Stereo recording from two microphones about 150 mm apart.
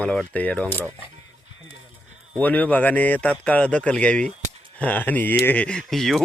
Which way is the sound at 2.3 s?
10° left (ahead or behind).